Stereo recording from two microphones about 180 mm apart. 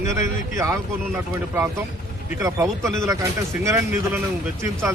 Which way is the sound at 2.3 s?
15° right (ahead or behind).